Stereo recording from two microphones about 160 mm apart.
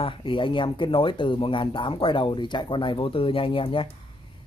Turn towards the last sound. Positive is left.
turn(degrees=35)  # may be behind; listen again after turning